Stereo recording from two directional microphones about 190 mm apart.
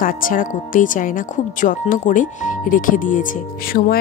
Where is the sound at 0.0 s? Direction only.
45° left (ahead or behind).